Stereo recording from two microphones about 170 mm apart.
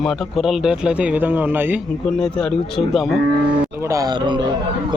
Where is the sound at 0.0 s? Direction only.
Centre (ahead or behind).